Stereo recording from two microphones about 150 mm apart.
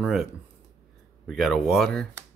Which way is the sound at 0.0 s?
Centre (ahead or behind).